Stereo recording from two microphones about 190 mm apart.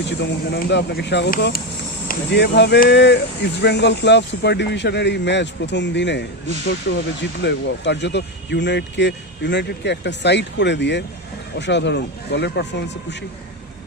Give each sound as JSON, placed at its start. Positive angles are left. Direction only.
{"t": 0.0, "sound": "speech", "side_deg": 65}